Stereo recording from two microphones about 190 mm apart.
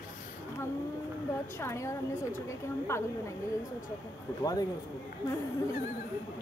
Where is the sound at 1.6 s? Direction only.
15° left (ahead or behind).